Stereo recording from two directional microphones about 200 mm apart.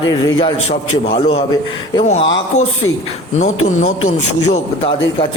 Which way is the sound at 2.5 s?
35° left (ahead or behind).